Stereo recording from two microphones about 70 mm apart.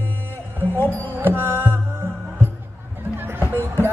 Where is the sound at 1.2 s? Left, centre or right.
Right.